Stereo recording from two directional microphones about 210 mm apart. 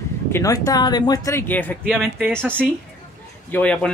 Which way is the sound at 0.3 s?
15° left (ahead or behind).